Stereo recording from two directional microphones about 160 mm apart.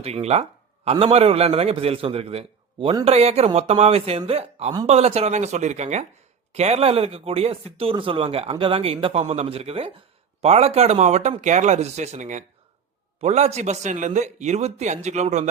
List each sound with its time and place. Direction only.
0.0 s a man's voice: 40° right (ahead or behind)